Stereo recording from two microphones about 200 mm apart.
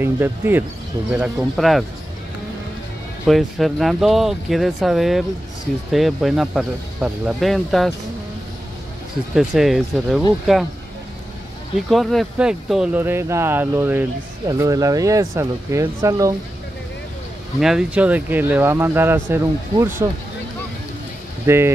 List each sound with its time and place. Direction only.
0.0 s speech: 10° right (ahead or behind)
3.3 s speech: centre (ahead or behind)
9.3 s speech: centre (ahead or behind)
11.9 s speech: centre (ahead or behind); by 16.3 s 15° right (ahead or behind)
17.6 s speech: centre (ahead or behind)
21.5 s speech: 10° right (ahead or behind)